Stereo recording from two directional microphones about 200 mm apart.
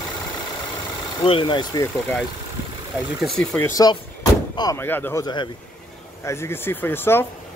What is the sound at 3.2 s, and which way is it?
Speech, centre (ahead or behind).